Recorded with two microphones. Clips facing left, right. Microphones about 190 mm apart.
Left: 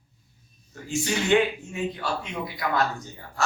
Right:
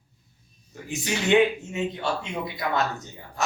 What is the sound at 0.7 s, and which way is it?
A man's voice, 20° right (ahead or behind).